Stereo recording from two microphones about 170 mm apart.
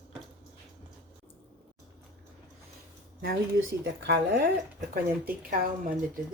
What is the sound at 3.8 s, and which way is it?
Speech, 90° right.